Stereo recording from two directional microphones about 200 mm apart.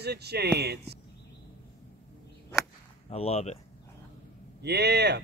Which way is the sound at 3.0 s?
30° left (ahead or behind).